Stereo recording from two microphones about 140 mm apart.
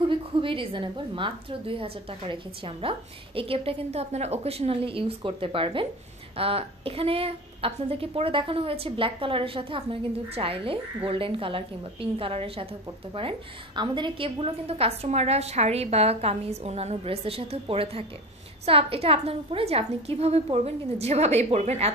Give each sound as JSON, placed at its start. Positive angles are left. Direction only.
{"t": 0.4, "sound": "a woman's voice", "side_deg": -40}